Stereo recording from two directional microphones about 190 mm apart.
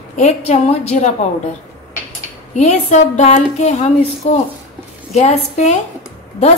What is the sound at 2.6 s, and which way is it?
A woman's voice, 40° left (ahead or behind).